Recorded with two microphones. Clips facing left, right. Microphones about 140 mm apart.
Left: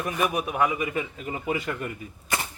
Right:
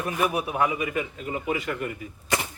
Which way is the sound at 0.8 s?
25° left (ahead or behind).